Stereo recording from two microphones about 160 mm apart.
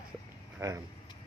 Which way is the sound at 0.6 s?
20° right (ahead or behind).